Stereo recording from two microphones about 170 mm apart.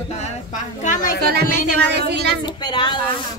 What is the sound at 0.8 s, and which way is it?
Speech, 50° left (ahead or behind).